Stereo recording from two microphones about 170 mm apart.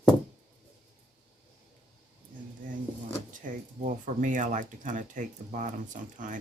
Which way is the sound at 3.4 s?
50° right (ahead or behind).